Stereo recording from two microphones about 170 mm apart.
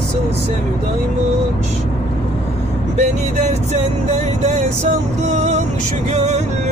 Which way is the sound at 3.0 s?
40° right (ahead or behind).